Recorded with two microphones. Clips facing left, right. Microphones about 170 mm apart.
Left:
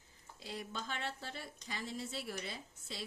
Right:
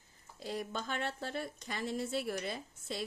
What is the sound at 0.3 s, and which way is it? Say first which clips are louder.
Speech: right 6 dB; 45° right (ahead or behind).